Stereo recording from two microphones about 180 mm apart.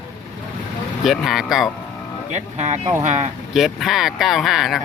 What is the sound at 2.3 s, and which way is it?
Speech, 40° right (ahead or behind).